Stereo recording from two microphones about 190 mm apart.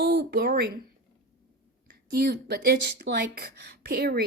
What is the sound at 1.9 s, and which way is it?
Speech, 50° right (ahead or behind).